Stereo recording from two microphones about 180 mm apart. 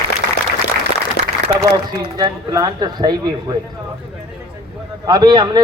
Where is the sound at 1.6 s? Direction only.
20° right (ahead or behind).